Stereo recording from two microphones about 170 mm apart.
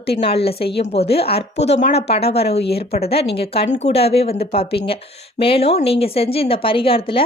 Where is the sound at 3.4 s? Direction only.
35° left (ahead or behind).